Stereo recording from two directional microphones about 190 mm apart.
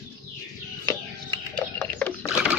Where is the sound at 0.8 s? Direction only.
15° left (ahead or behind).